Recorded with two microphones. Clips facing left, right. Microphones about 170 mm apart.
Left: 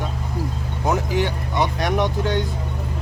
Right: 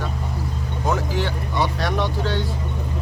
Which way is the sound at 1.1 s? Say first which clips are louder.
Left 2 dB; 15° left (ahead or behind).